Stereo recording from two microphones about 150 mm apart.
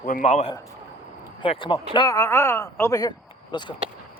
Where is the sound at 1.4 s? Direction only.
35° left (ahead or behind).